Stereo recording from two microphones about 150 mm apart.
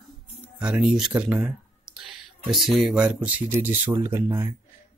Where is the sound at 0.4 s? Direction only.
10° right (ahead or behind).